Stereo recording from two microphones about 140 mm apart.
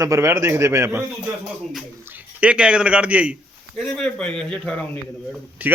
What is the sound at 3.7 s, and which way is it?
A man's voice, 5° left (ahead or behind).